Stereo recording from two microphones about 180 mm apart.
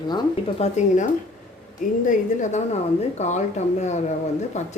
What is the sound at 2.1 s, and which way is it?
Speech, 40° left (ahead or behind).